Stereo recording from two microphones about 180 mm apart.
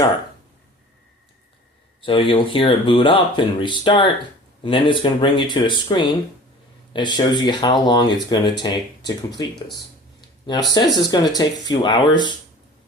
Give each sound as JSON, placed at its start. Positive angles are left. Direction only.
{"t": 2.0, "sound": "speech", "side_deg": 30}
{"t": 10.8, "sound": "speech", "side_deg": 20}